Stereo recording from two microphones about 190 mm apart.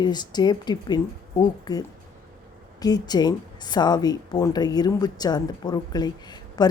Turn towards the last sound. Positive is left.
turn(degrees=20)  # may be behind; listen again after turning